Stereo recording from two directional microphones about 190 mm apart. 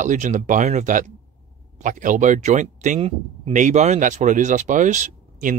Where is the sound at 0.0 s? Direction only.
40° right (ahead or behind).